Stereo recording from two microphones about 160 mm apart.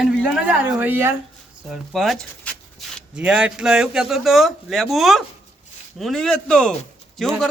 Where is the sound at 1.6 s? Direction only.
Centre (ahead or behind).